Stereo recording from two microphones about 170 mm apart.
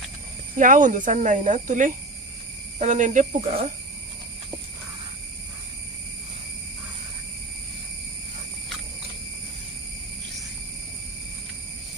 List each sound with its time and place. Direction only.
0.6 s speech: 50° right (ahead or behind)